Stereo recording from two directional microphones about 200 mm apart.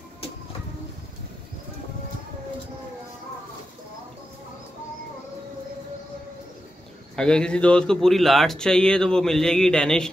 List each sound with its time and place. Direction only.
7.2 s speech: 5° left (ahead or behind)